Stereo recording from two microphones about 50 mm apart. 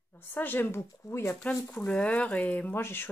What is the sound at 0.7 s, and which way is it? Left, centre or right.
Speech, left.